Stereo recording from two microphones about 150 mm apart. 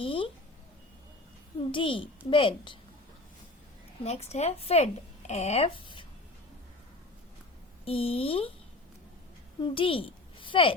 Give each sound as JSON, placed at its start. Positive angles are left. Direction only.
{"t": 0.0, "sound": "a sound", "side_deg": 35}
{"t": 1.7, "sound": "a child's voice", "side_deg": 35}
{"t": 4.0, "sound": "speech", "side_deg": 45}
{"t": 7.9, "sound": "a child's voice", "side_deg": 40}
{"t": 9.6, "sound": "a woman's voice", "side_deg": 35}